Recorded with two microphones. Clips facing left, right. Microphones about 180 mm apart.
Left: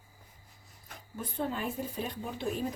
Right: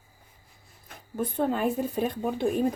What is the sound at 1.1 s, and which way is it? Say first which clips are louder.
Speech: right 8 dB; 55° right (ahead or behind).